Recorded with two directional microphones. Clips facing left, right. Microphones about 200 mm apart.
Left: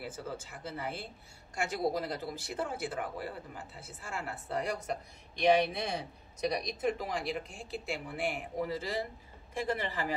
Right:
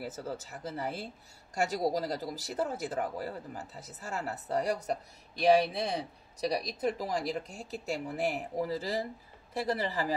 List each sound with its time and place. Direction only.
0.0 s speech: 40° right (ahead or behind)